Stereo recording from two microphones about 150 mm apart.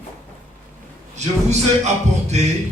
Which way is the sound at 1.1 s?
50° right (ahead or behind).